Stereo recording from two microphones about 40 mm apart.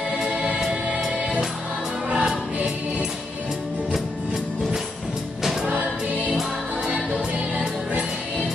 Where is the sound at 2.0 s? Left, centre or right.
Centre.